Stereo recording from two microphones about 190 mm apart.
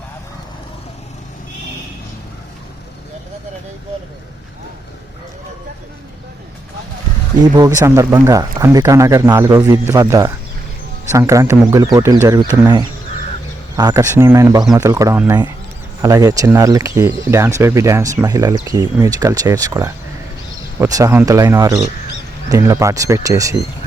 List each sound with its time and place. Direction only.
7.5 s speech: 20° right (ahead or behind)